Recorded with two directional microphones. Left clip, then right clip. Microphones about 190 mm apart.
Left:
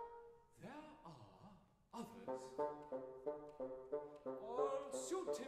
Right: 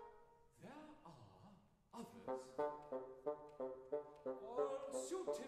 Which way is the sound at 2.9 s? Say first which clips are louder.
Even; 40° right (ahead or behind).